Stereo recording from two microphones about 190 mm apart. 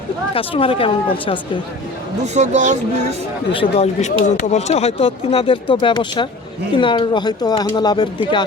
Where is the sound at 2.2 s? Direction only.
35° right (ahead or behind).